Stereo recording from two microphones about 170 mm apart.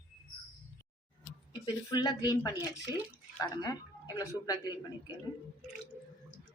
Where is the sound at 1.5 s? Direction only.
25° left (ahead or behind).